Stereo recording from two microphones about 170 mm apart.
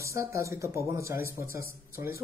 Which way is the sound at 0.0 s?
15° right (ahead or behind).